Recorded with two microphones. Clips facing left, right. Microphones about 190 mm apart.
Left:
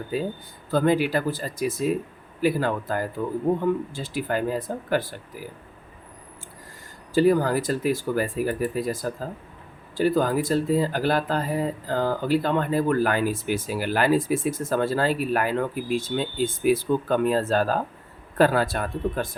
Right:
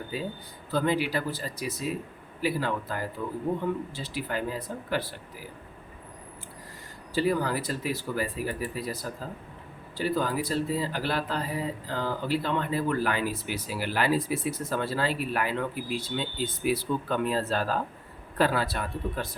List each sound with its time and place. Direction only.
0.7 s speech: 50° left (ahead or behind)
7.1 s speech: 45° left (ahead or behind)